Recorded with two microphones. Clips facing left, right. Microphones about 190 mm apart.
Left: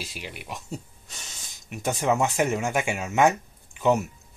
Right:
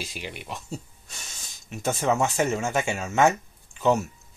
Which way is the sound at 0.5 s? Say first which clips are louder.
Even; 15° left (ahead or behind).